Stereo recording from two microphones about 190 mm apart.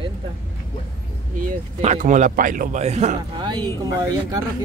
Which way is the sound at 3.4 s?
20° right (ahead or behind).